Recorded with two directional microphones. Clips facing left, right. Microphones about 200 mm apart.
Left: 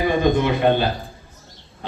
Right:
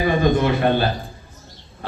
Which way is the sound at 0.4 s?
20° left (ahead or behind).